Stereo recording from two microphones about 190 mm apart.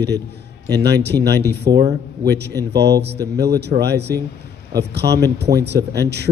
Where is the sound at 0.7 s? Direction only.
60° right (ahead or behind).